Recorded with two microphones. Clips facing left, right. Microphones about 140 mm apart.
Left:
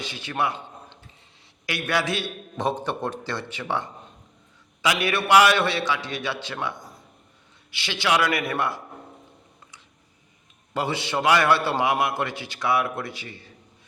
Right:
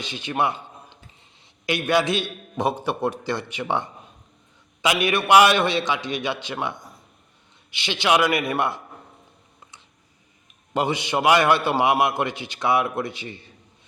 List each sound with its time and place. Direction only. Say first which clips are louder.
0.0 s a man's voice: right 3 dB; 20° right (ahead or behind)
1.6 s a man's voice: right 5 dB; 20° right (ahead or behind)
10.8 s a man's voice: right 3 dB; 15° right (ahead or behind)